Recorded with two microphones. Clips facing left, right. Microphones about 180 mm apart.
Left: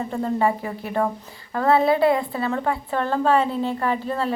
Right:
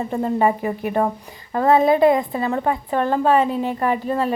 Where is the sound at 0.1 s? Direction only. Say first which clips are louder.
Right 3 dB; 20° right (ahead or behind).